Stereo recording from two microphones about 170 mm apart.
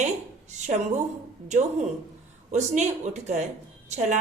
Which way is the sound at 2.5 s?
45° right (ahead or behind).